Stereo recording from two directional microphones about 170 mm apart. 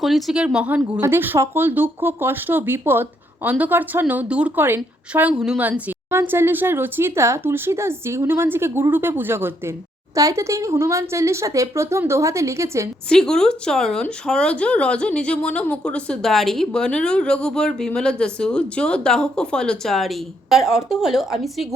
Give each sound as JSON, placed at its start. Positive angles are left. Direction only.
{"t": 0.0, "sound": "speech", "side_deg": 0}
{"t": 13.1, "sound": "speech", "side_deg": 5}